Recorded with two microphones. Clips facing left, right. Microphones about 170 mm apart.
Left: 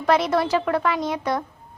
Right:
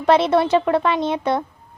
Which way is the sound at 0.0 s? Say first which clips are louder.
Right 4 dB; 25° right (ahead or behind).